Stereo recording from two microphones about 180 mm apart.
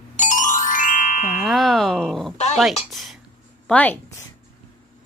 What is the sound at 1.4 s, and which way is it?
A woman's voice, centre (ahead or behind).